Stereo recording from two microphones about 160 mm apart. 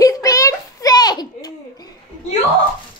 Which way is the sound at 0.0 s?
20° left (ahead or behind).